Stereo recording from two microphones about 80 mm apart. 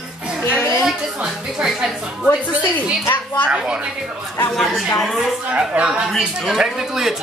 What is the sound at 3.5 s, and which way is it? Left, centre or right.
Speech, centre.